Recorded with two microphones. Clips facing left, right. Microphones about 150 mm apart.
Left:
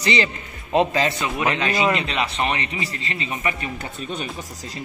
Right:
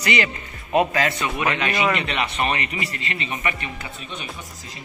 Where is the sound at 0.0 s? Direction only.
25° left (ahead or behind).